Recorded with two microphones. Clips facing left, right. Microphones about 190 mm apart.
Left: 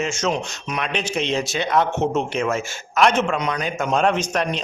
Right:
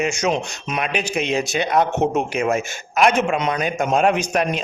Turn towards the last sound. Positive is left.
turn(degrees=-10)  # may be behind; listen again after turning